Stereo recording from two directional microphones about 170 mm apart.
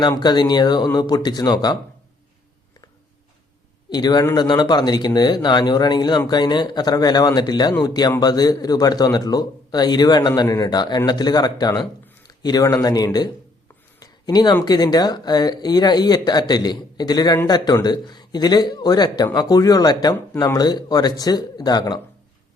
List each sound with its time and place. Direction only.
0.0 s speech: 25° left (ahead or behind)
3.8 s a man's voice: 25° left (ahead or behind)
14.0 s a sound: 25° left (ahead or behind)
14.6 s speech: 25° left (ahead or behind)